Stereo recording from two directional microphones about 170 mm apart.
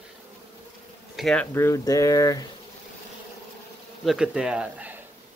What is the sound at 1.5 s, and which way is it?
Speech, 15° left (ahead or behind).